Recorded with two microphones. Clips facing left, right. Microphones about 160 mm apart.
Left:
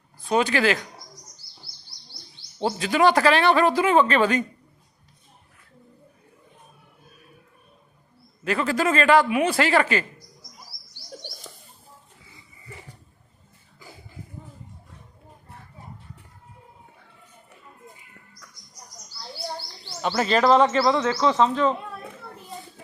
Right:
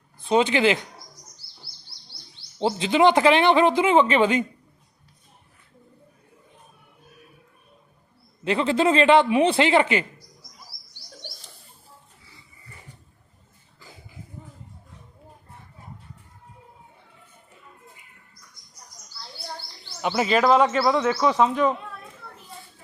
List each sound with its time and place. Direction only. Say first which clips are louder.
0.3 s speech: right 2 dB; 20° right (ahead or behind)
2.6 s speech: right 2 dB; 20° right (ahead or behind)
8.4 s speech: right 3 dB; 25° right (ahead or behind)
20.0 s a man's voice: even; 10° right (ahead or behind)